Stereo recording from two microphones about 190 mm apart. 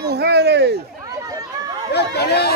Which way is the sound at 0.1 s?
60° right (ahead or behind).